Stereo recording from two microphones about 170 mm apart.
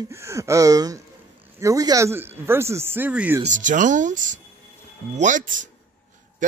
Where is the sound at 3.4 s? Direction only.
45° right (ahead or behind).